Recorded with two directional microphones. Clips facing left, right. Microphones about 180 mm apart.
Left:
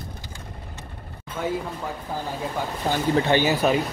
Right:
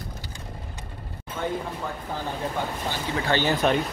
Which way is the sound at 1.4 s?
5° left (ahead or behind).